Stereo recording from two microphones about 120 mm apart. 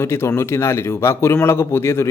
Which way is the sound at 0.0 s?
20° left (ahead or behind).